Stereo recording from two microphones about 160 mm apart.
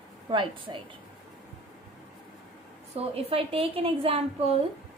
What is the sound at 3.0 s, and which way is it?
A woman's voice, 40° right (ahead or behind).